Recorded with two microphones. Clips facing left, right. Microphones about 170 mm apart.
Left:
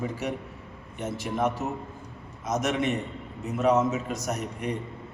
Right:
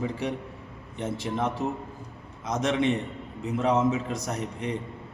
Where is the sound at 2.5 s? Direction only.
30° right (ahead or behind).